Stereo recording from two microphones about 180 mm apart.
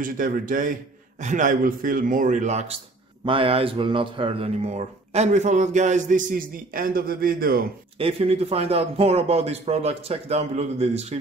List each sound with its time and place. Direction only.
0.0 s a man's voice: 50° right (ahead or behind)
8.0 s a man's voice: 35° right (ahead or behind)